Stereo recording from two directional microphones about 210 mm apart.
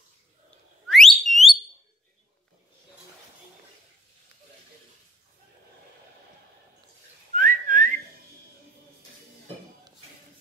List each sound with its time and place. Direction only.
0.8 s whistling: centre (ahead or behind)
7.3 s whistling: 40° right (ahead or behind)